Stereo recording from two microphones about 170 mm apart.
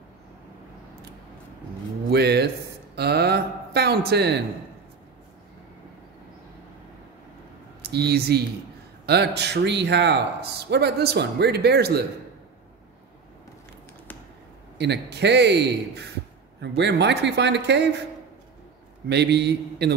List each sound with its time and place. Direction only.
2.0 s speech: 70° right (ahead or behind)
3.0 s a sound: 70° right (ahead or behind)
7.8 s a man's voice: 75° right (ahead or behind)
14.8 s a man's voice: 80° right
16.6 s speech: 90° right
19.0 s a man's voice: 80° right